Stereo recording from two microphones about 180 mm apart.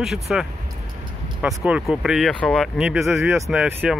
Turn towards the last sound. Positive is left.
turn(degrees=-5)  # may be behind; listen again after turning